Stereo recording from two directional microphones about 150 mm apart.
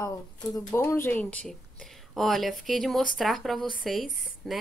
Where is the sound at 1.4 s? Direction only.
Centre (ahead or behind).